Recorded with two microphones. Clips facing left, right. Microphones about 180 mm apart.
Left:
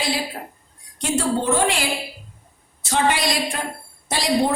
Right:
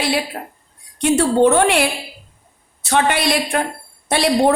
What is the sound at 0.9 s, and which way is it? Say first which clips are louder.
A woman's voice: right 7 dB; 65° right (ahead or behind).